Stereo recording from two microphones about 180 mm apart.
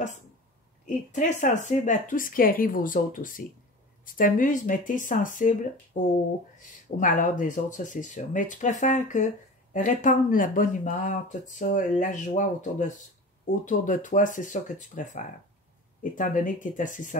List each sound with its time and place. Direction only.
0.8 s speech: 45° left (ahead or behind)
7.0 s speech: 45° left (ahead or behind)